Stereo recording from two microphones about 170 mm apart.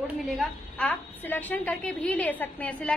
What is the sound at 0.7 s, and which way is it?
A woman's voice, 10° left (ahead or behind).